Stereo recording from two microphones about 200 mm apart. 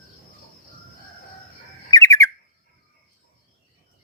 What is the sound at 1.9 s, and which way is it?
Bird, 15° left (ahead or behind).